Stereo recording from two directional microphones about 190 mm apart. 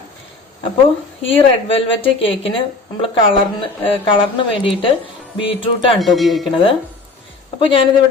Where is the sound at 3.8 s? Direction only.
30° left (ahead or behind).